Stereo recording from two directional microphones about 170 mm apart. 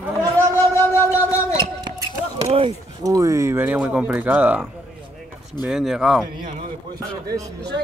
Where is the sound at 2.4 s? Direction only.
35° right (ahead or behind).